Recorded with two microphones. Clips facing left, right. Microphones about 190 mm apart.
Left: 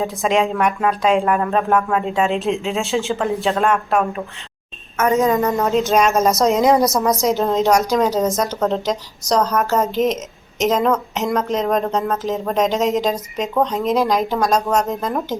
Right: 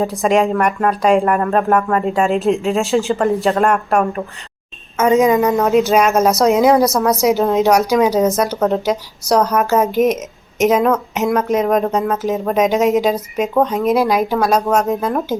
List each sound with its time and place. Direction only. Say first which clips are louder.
0.0 s speech: right 3 dB; centre (ahead or behind)
4.9 s a woman's voice: right 4 dB; 20° right (ahead or behind)
5.5 s speech: right 4 dB; centre (ahead or behind)